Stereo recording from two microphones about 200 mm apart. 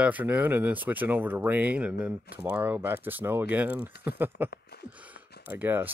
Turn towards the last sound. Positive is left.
turn(degrees=-10)  # may be behind; listen again after turning